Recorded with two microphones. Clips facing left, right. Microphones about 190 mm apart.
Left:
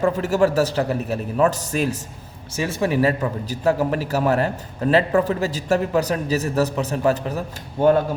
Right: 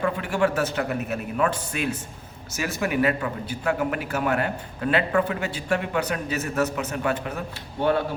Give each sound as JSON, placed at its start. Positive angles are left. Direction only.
{"t": 0.2, "sound": "a man's voice", "side_deg": 40}